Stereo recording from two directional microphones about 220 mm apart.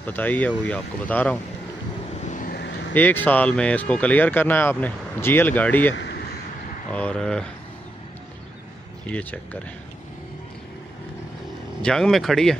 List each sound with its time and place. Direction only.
0.0 s speech: 10° left (ahead or behind)
2.2 s vehicle: 35° left (ahead or behind)
2.9 s speech: 10° left (ahead or behind)
5.9 s a sound: 50° left (ahead or behind)
6.9 s speech: 5° left (ahead or behind)
9.1 s speech: 5° left (ahead or behind)
11.8 s speech: centre (ahead or behind)